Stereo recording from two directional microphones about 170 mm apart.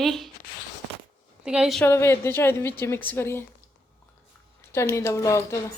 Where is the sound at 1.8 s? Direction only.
15° left (ahead or behind).